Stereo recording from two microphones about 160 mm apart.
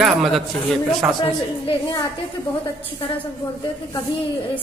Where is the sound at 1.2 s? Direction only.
25° left (ahead or behind).